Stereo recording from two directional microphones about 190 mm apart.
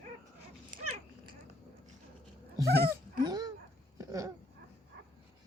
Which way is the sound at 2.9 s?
20° right (ahead or behind).